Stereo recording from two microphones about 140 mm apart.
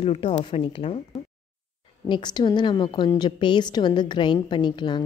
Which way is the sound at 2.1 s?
30° left (ahead or behind).